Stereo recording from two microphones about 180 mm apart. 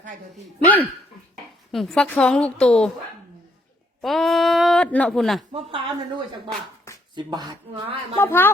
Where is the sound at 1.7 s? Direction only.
Centre (ahead or behind).